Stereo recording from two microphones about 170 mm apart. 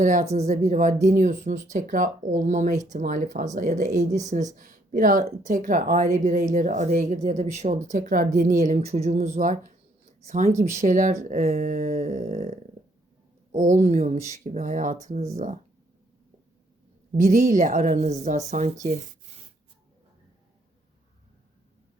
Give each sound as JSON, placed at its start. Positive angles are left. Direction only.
{"t": 0.0, "sound": "speech", "side_deg": -45}
{"t": 17.2, "sound": "speech", "side_deg": -45}